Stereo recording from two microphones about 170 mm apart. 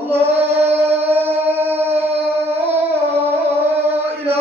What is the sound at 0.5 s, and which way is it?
Music, 15° right (ahead or behind).